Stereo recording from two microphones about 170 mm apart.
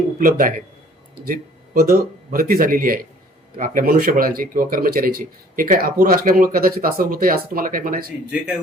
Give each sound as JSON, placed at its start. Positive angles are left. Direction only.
{"t": 0.2, "sound": "a man's voice", "side_deg": -55}